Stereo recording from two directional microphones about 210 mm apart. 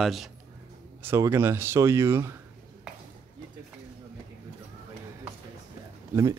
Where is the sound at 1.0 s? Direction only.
10° right (ahead or behind).